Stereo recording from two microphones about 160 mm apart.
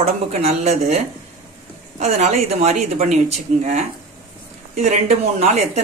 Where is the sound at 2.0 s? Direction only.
45° right (ahead or behind).